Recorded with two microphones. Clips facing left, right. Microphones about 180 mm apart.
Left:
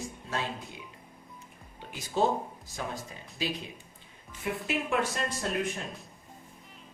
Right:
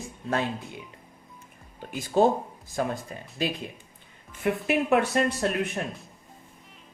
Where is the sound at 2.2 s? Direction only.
55° right (ahead or behind).